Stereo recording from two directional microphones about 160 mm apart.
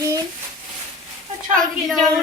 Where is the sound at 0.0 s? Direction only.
20° right (ahead or behind).